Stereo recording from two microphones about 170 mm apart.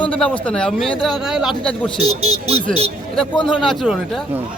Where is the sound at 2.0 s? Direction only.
35° right (ahead or behind).